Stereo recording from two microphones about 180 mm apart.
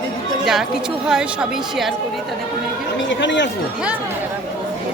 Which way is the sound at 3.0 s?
85° left.